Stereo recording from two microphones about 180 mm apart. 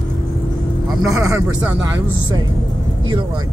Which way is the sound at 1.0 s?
15° right (ahead or behind).